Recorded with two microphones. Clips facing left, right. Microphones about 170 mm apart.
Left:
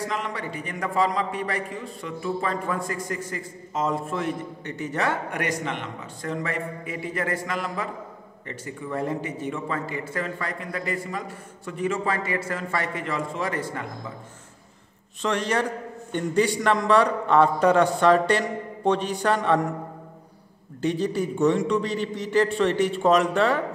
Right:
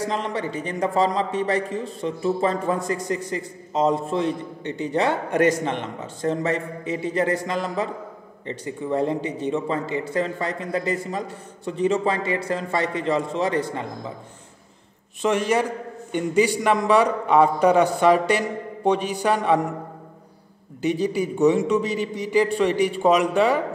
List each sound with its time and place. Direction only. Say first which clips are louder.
0.1 s a man's voice: right 4 dB; 30° right (ahead or behind)
15.2 s a man's voice: right 4 dB; 5° right (ahead or behind)
20.8 s a man's voice: right 2 dB; 5° right (ahead or behind)